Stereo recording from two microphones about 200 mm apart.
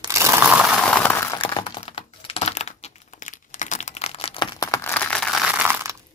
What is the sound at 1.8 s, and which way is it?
Computer keyboard, 30° left (ahead or behind).